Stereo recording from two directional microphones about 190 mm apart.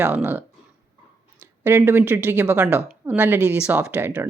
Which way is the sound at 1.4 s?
10° right (ahead or behind).